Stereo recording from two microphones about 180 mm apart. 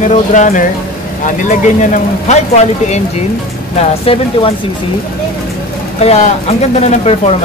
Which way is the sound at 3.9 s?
35° left (ahead or behind).